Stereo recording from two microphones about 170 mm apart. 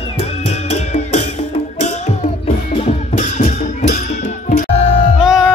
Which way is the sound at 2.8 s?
45° left (ahead or behind).